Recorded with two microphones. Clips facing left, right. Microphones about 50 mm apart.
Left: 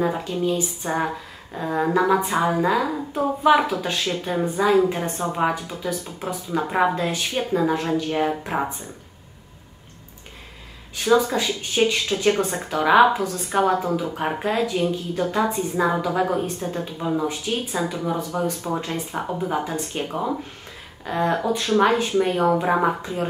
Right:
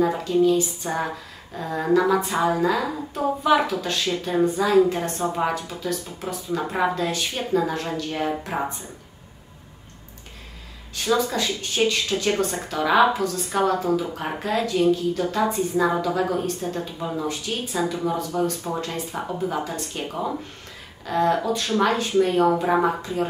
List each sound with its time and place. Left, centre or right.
0.0 s speech: centre
11.1 s speech: centre